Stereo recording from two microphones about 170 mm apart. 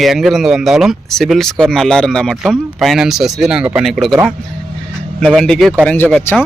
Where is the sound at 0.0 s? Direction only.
Centre (ahead or behind).